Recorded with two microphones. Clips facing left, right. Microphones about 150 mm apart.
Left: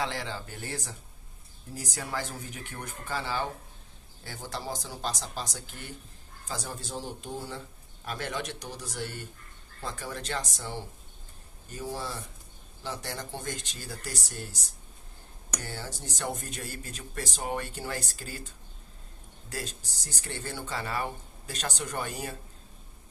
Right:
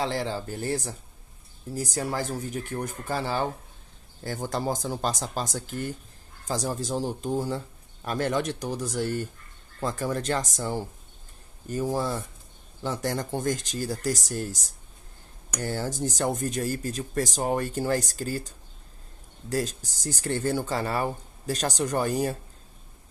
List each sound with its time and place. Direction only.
0.0 s speech: 35° right (ahead or behind)
15.6 s speech: 45° right (ahead or behind)
19.5 s speech: 45° right (ahead or behind)